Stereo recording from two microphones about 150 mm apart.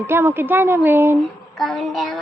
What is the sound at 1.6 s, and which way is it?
Speech, centre (ahead or behind).